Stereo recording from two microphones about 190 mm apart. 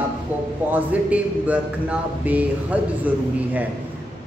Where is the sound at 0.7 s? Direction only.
10° right (ahead or behind).